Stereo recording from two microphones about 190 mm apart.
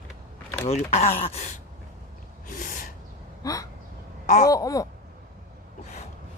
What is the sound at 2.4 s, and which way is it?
Gasp, 45° left (ahead or behind).